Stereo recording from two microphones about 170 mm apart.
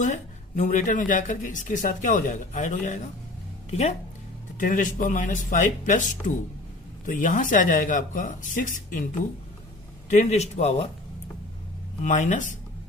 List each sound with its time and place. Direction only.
0.0 s speech: 45° left (ahead or behind)
4.5 s speech: 50° left (ahead or behind)
10.1 s a man's voice: 40° left (ahead or behind)
12.0 s speech: 45° left (ahead or behind)